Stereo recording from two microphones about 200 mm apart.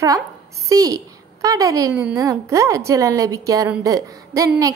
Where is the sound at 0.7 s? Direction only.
15° right (ahead or behind).